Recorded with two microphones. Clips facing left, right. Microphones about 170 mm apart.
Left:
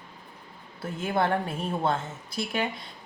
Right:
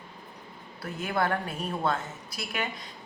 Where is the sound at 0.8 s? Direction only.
25° left (ahead or behind).